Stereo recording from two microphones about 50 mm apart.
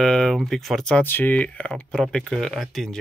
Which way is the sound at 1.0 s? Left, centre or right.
Left.